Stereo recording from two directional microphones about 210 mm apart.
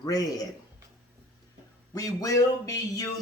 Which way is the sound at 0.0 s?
15° left (ahead or behind).